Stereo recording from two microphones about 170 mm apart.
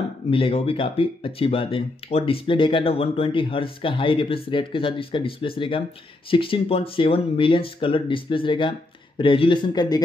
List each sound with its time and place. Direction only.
0.3 s a man's voice: 30° left (ahead or behind)